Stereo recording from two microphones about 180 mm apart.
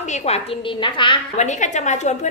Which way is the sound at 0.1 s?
35° left (ahead or behind).